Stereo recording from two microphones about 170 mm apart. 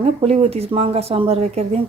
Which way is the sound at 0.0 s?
35° right (ahead or behind).